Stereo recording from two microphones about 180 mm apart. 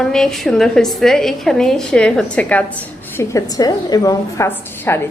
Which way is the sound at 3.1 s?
20° left (ahead or behind).